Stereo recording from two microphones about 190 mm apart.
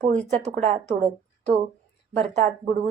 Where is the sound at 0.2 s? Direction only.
35° right (ahead or behind).